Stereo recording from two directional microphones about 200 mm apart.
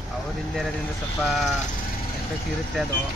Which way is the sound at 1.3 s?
Centre (ahead or behind).